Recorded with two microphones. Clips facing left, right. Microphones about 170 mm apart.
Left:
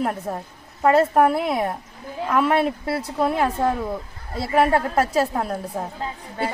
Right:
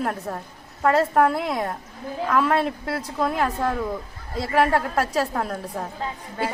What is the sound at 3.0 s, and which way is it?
Speech, 30° left (ahead or behind).